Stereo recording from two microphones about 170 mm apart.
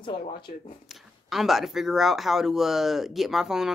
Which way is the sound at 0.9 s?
Centre (ahead or behind).